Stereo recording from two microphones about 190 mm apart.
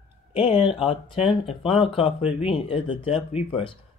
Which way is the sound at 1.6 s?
30° left (ahead or behind).